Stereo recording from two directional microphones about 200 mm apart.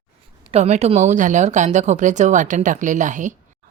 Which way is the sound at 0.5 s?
35° right (ahead or behind).